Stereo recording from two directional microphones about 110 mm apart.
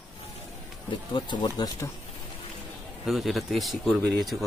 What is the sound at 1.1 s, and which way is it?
Speech, 40° left (ahead or behind).